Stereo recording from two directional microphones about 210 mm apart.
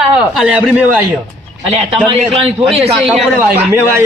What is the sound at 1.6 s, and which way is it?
Speech, 30° right (ahead or behind).